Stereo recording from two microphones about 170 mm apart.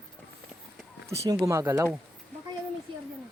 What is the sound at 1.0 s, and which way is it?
Speech, 20° right (ahead or behind).